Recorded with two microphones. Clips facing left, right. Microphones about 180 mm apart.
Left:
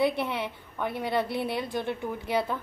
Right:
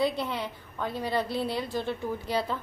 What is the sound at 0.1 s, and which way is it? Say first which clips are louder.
Speech: left 2 dB; 60° left (ahead or behind).